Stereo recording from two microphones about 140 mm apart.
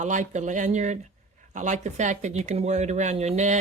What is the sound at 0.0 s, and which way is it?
Speech, 60° right (ahead or behind).